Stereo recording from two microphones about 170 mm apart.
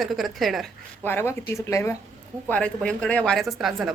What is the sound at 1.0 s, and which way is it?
A woman's voice, 15° left (ahead or behind).